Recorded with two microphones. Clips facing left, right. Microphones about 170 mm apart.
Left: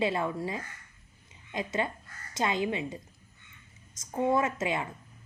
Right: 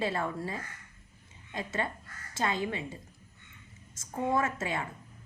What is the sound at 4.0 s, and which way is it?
Speech, 20° left (ahead or behind).